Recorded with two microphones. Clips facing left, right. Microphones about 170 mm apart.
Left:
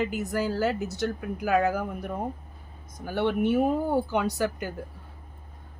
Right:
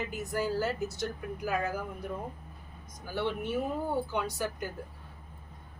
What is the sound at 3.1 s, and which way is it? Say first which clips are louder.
Speech: left 8 dB; 60° left (ahead or behind).